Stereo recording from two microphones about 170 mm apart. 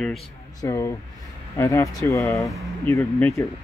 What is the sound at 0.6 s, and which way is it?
Speech, 20° left (ahead or behind).